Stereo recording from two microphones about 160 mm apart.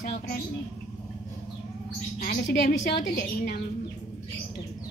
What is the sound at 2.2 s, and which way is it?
A woman's voice, 60° left (ahead or behind).